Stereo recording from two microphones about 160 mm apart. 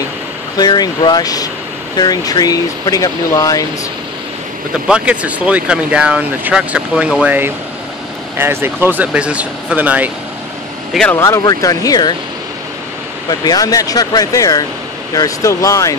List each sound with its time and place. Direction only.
0.6 s speech: 25° left (ahead or behind)
4.8 s speech: 5° right (ahead or behind)
10.9 s speech: 5° left (ahead or behind)
11.1 s speech: 20° left (ahead or behind)
13.3 s speech: 25° left (ahead or behind)